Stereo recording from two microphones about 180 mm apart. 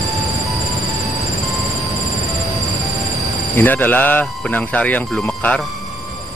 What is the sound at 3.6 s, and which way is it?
Speech, 10° left (ahead or behind).